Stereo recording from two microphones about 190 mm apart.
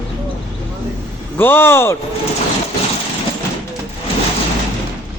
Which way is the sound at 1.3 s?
10° left (ahead or behind).